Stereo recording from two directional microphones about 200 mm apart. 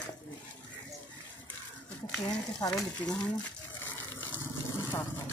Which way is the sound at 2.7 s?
5° left (ahead or behind).